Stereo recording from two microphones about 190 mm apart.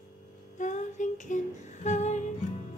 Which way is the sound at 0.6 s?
40° left (ahead or behind).